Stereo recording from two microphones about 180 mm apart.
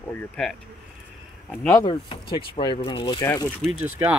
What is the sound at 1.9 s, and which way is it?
Speech, 30° left (ahead or behind).